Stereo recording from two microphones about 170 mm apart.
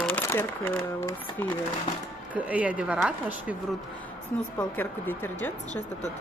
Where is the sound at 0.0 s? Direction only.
10° left (ahead or behind).